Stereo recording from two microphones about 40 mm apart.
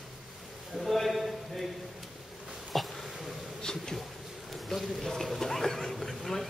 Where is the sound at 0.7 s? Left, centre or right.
Centre.